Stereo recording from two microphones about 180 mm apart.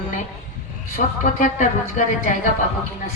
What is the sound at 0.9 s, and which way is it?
A woman's voice, 45° left (ahead or behind).